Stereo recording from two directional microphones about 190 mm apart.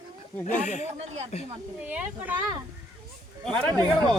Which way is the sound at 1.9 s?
10° right (ahead or behind).